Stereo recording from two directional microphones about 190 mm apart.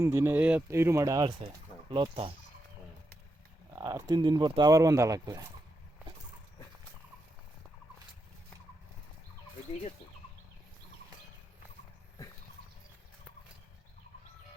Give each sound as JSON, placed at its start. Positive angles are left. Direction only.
{"t": 0.0, "sound": "speech", "side_deg": -10}
{"t": 1.9, "sound": "speech", "side_deg": -25}
{"t": 3.8, "sound": "speech", "side_deg": -20}